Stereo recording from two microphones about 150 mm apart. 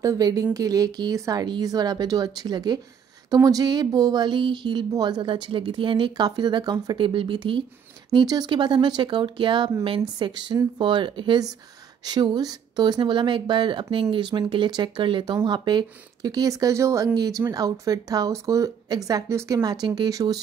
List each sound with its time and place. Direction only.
0.0 s speech: 25° right (ahead or behind)